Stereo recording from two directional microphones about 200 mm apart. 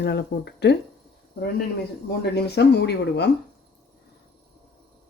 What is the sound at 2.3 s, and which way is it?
Speech, 55° left (ahead or behind).